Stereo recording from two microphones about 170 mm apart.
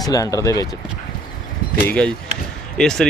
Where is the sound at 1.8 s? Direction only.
10° left (ahead or behind).